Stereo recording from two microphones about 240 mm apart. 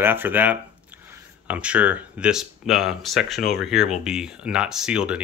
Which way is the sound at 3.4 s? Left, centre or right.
Left.